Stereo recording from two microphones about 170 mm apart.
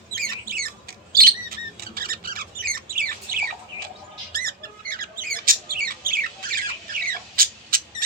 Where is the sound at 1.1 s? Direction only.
60° right (ahead or behind).